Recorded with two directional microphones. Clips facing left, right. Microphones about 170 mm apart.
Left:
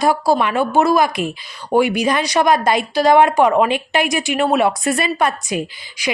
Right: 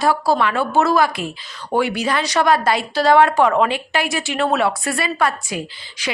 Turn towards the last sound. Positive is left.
turn(degrees=15)  # may be behind; listen again after turning